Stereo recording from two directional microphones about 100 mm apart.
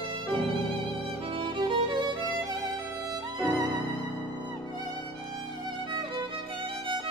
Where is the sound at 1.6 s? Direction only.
50° right (ahead or behind).